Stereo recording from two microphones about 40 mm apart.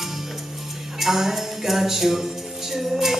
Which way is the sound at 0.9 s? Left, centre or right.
Centre.